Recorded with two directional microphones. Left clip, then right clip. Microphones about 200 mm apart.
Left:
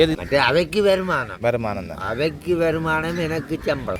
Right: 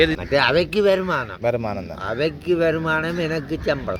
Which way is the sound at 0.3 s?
Centre (ahead or behind).